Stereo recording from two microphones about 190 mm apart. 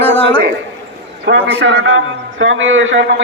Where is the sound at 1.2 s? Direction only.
70° right (ahead or behind).